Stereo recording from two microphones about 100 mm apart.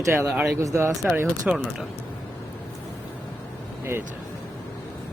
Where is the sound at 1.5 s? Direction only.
15° right (ahead or behind).